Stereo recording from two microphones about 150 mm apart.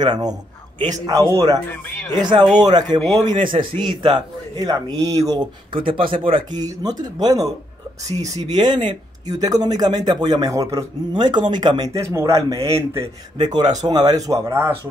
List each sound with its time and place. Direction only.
0.0 s a man's voice: 25° right (ahead or behind)
1.7 s speech: 15° left (ahead or behind)
2.6 s a man's voice: 30° right (ahead or behind)
6.6 s speech: 25° right (ahead or behind)
8.5 s speech: 30° right (ahead or behind); by 14.8 s 15° right (ahead or behind)